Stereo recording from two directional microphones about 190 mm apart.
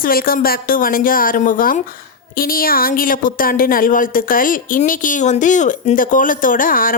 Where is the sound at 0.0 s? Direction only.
50° left (ahead or behind).